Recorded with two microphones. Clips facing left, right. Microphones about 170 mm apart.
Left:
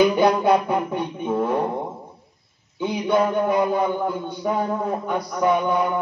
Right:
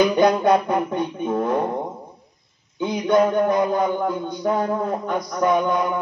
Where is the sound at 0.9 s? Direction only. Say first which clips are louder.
Right 1 dB; 10° left (ahead or behind).